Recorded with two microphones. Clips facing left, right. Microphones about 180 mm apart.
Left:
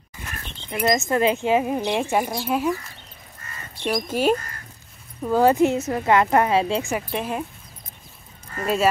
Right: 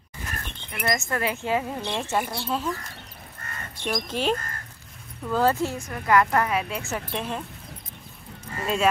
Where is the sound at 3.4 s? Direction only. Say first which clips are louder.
Right 1 dB; 60° right (ahead or behind).